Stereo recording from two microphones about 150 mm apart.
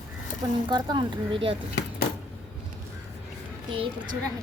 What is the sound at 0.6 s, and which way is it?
Speech, 30° right (ahead or behind).